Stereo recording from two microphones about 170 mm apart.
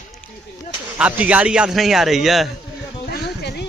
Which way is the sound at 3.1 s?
75° left (ahead or behind).